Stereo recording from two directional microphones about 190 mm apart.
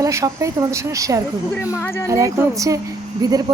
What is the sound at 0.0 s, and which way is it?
Speech, 15° right (ahead or behind).